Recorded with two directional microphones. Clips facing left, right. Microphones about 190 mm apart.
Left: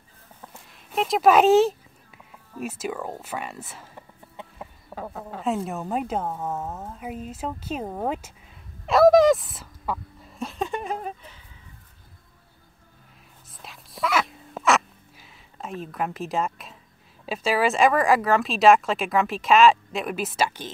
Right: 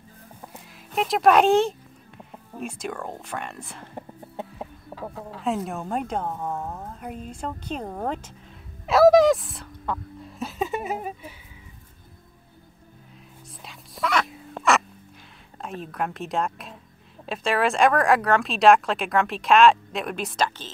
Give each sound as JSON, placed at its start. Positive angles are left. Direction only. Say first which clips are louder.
{"t": 0.5, "sound": "speech", "louder": "right 3 dB", "side_deg": 0}
{"t": 4.9, "sound": "a sound", "louder": "left 2 dB", "side_deg": -25}
{"t": 5.4, "sound": "speech", "louder": "even", "side_deg": 0}
{"t": 8.8, "sound": "a sound", "louder": "even", "side_deg": 0}
{"t": 13.6, "sound": "whispering", "louder": "even", "side_deg": 0}
{"t": 15.6, "sound": "speech", "louder": "even", "side_deg": 0}